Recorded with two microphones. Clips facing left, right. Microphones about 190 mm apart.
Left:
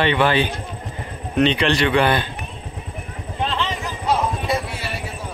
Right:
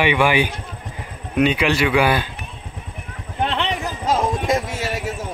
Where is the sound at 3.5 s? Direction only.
65° right (ahead or behind).